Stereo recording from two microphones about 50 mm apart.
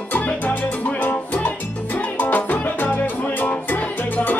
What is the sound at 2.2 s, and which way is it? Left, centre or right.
Music, left.